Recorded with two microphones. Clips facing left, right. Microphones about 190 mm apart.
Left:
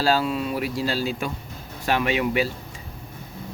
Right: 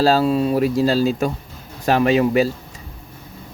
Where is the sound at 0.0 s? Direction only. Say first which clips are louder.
Right 6 dB; 40° right (ahead or behind).